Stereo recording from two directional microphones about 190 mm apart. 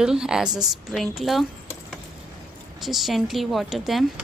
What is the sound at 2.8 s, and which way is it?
Speech, centre (ahead or behind).